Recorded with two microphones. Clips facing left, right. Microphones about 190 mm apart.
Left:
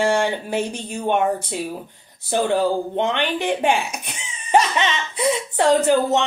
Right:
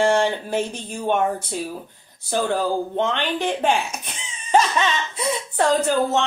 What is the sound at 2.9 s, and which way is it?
Speech, 15° left (ahead or behind).